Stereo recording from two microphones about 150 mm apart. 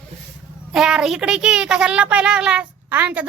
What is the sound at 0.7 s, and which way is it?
Speech, 5° right (ahead or behind).